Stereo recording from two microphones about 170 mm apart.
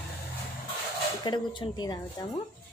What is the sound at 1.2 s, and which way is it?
A woman's voice, 25° left (ahead or behind).